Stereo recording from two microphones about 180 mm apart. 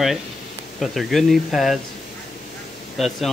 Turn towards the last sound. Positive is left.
turn(degrees=0)  # may be behind; listen again after turning